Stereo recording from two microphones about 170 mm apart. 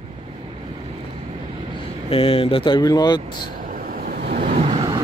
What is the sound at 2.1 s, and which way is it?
Speech, 35° left (ahead or behind).